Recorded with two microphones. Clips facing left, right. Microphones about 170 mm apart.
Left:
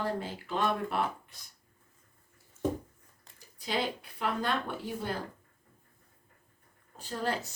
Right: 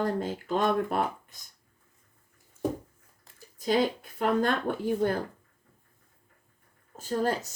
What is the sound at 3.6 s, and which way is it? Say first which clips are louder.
Speech: right 7 dB; 45° right (ahead or behind).